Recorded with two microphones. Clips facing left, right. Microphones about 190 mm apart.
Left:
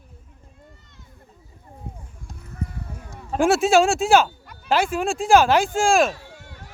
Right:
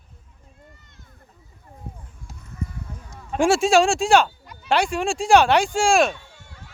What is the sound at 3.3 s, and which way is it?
Speech, centre (ahead or behind).